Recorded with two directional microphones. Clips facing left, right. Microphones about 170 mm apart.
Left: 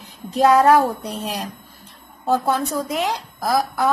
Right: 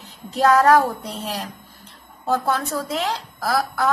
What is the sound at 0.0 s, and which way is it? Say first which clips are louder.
Speech: left 2 dB; 15° left (ahead or behind).